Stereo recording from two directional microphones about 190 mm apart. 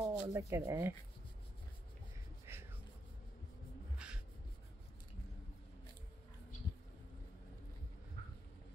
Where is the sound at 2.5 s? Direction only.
15° right (ahead or behind).